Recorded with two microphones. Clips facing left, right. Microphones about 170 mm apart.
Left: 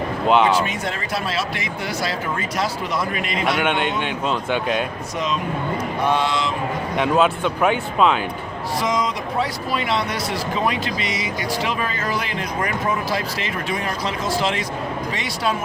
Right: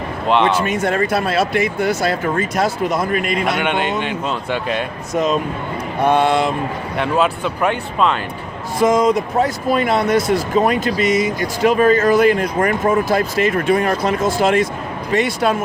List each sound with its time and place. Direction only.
0.3 s a man's voice: centre (ahead or behind)
0.6 s speech: 50° right (ahead or behind)
3.4 s a man's voice: centre (ahead or behind)
5.1 s speech: 45° right (ahead or behind)
6.9 s a man's voice: centre (ahead or behind)
8.8 s speech: 50° right (ahead or behind)